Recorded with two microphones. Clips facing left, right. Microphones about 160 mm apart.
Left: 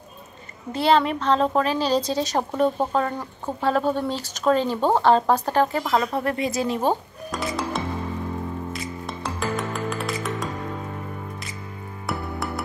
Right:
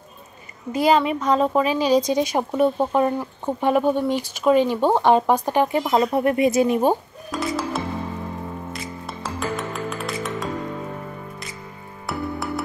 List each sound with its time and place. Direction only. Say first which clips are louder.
0.8 s speech: right 1 dB; 5° right (ahead or behind)
7.2 s music: right 2 dB; centre (ahead or behind)
12.1 s music: right 2 dB; centre (ahead or behind)